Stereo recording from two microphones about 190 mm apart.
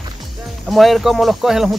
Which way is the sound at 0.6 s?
Centre (ahead or behind).